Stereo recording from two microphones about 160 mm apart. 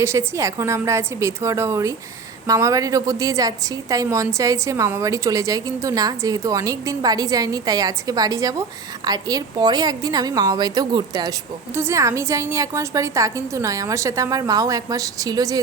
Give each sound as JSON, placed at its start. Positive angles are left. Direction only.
{"t": 0.0, "sound": "a woman's voice", "side_deg": -15}